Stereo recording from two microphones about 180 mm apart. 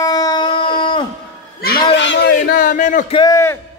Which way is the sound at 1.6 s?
75° left (ahead or behind).